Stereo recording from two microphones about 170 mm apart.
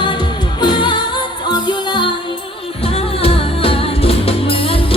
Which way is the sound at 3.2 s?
35° left (ahead or behind).